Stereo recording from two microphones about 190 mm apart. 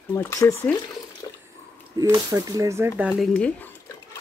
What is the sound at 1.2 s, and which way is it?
Water, 20° left (ahead or behind).